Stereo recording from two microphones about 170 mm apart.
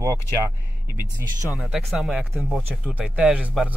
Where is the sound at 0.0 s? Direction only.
20° right (ahead or behind).